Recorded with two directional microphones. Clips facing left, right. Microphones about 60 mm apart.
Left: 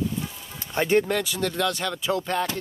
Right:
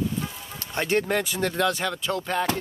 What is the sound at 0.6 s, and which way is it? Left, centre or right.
Speech, centre.